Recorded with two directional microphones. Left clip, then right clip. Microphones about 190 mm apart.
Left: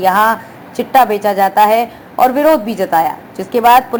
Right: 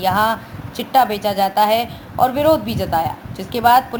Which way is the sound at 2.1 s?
Centre (ahead or behind).